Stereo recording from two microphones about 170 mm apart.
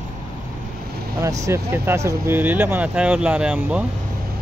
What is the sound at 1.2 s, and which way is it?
Speech, 20° right (ahead or behind).